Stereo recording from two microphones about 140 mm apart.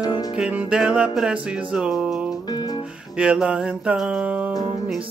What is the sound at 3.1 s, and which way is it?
Music, 5° right (ahead or behind).